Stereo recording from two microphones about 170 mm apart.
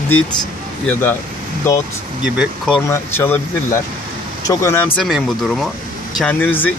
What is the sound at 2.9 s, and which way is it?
Speech, 15° left (ahead or behind).